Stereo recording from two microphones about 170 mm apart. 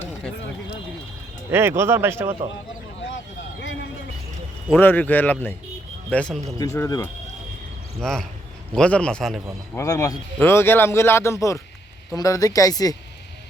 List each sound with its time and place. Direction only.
1.5 s speech: 15° right (ahead or behind)
4.8 s speech: 10° left (ahead or behind)
6.7 s speech: 20° left (ahead or behind)
8.0 s a man's voice: 5° left (ahead or behind)
9.7 s speech: 20° left (ahead or behind)